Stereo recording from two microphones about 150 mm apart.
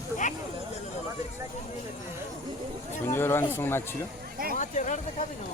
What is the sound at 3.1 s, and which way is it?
Speech, 15° left (ahead or behind).